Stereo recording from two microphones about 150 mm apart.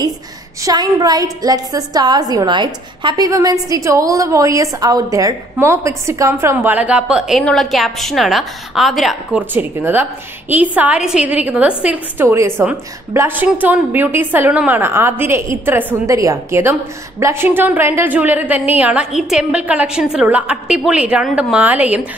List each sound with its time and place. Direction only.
0.7 s a woman's voice: 25° right (ahead or behind); by 9.4 s centre (ahead or behind)
9.5 s a woman's voice: 15° right (ahead or behind)